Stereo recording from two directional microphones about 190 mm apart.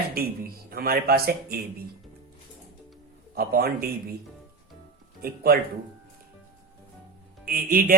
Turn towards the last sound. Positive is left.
turn(degrees=-50)  # may be behind; listen again after turning